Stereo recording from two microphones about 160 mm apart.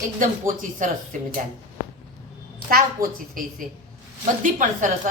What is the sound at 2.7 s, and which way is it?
A woman's voice, 60° right (ahead or behind).